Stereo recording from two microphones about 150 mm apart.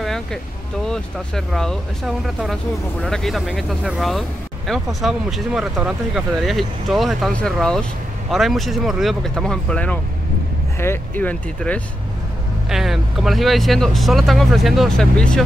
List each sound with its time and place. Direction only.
0.0 s vehicle: 5° left (ahead or behind)
0.8 s speech: 5° left (ahead or behind)
12.6 s speech: centre (ahead or behind)